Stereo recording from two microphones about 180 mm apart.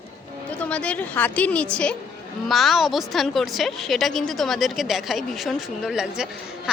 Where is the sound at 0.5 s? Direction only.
5° left (ahead or behind).